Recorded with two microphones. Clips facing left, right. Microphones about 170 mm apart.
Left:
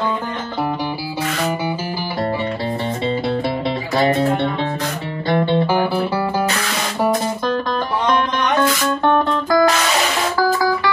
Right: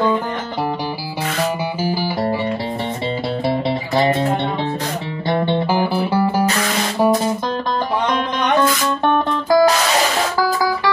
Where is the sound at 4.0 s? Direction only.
20° right (ahead or behind).